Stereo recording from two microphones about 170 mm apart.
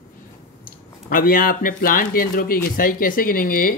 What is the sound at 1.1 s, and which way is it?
Speech, 55° left (ahead or behind).